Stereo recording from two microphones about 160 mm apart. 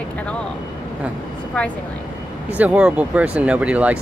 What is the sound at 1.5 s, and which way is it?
Speech, 5° left (ahead or behind).